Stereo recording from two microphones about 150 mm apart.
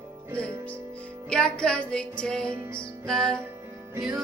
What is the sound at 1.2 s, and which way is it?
Music, 5° left (ahead or behind).